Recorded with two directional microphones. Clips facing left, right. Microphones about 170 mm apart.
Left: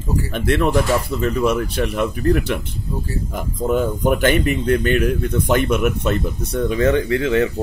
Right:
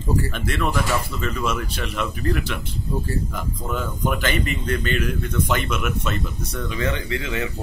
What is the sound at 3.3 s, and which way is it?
Speech, 50° left (ahead or behind).